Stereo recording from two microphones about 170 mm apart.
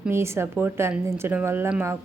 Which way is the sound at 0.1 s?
15° right (ahead or behind).